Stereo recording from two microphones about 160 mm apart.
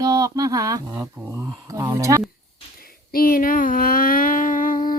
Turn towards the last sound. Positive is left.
turn(degrees=60)  # may be behind; listen again after turning